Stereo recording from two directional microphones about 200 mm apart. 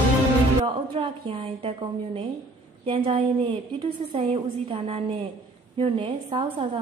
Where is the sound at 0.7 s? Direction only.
25° right (ahead or behind).